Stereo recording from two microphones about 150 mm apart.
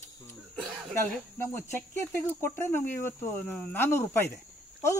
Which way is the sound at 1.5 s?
15° left (ahead or behind).